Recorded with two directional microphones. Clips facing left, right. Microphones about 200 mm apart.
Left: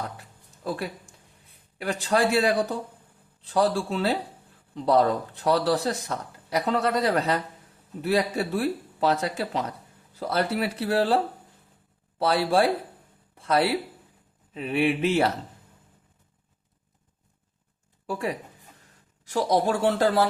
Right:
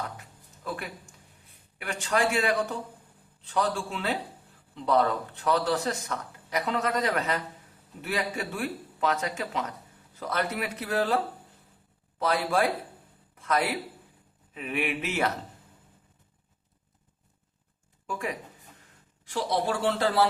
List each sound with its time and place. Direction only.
0.2 s music: 35° left (ahead or behind)
1.8 s speech: 35° left (ahead or behind)
12.2 s a man's voice: 30° left (ahead or behind)
18.0 s speech: 35° left (ahead or behind)